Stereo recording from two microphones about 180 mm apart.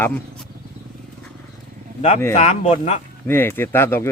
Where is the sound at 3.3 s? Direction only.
10° left (ahead or behind).